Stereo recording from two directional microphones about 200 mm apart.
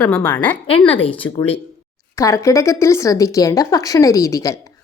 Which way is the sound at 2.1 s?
15° left (ahead or behind).